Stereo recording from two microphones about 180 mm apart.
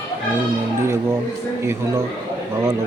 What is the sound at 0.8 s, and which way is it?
Speech, 15° right (ahead or behind).